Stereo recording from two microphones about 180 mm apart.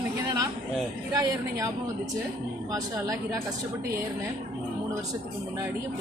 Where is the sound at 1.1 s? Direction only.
20° right (ahead or behind).